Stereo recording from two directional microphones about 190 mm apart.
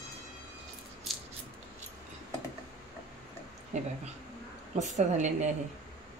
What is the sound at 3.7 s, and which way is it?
A woman's voice, 35° right (ahead or behind).